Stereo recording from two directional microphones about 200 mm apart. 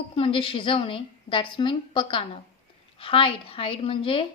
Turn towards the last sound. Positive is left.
turn(degrees=25)  # may be behind; listen again after turning